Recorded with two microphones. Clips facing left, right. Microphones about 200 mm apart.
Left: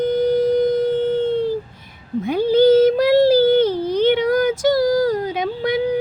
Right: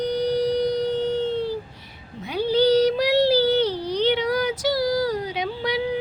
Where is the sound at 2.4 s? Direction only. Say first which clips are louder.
Left 5 dB; 50° left (ahead or behind).